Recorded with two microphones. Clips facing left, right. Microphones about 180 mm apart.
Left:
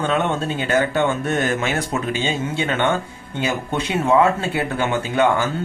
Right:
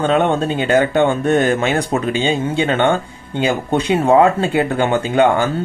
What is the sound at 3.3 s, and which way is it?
Speech, 25° right (ahead or behind).